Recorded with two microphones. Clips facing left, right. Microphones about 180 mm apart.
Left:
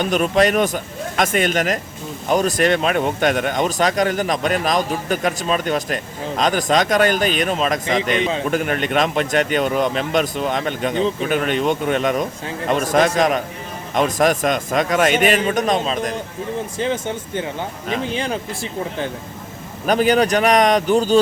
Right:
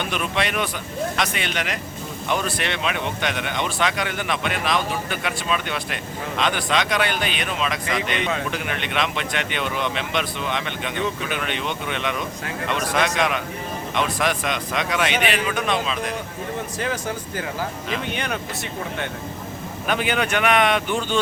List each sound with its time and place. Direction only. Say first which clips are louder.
0.0 s speech: left 9 dB; 40° left (ahead or behind)
16.7 s speech: left 5 dB; 25° left (ahead or behind)